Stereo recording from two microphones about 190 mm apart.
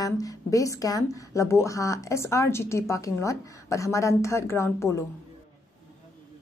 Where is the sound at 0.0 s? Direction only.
20° left (ahead or behind).